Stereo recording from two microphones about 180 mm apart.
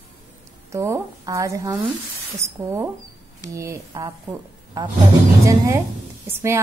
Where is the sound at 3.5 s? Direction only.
15° right (ahead or behind).